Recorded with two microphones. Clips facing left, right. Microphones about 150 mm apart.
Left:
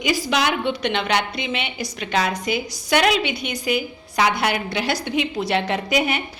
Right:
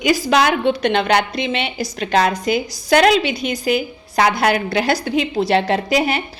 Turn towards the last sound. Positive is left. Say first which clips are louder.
# right 4 dB
turn(degrees=-35)  # may be behind; listen again after turning